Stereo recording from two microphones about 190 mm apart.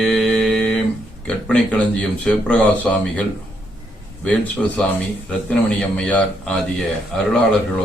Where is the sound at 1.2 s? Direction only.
5° left (ahead or behind).